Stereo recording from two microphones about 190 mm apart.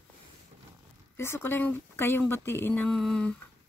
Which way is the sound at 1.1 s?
15° left (ahead or behind).